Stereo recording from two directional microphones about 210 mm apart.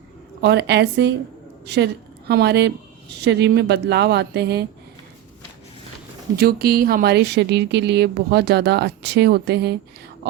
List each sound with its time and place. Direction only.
0.4 s a woman's voice: 55° right (ahead or behind)
6.3 s speech: 45° right (ahead or behind)